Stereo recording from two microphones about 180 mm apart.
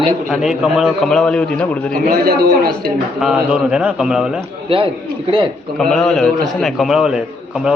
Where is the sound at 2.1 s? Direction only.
55° right (ahead or behind).